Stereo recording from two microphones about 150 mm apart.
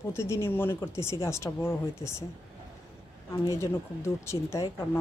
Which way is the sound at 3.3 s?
20° left (ahead or behind).